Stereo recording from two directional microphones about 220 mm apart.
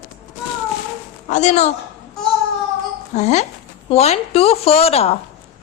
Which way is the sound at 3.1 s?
30° left (ahead or behind).